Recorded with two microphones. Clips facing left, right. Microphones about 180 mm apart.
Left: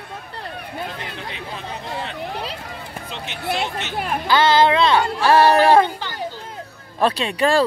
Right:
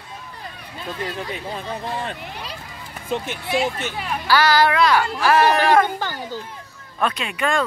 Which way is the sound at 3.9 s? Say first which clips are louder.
Left 3 dB; 55° left (ahead or behind).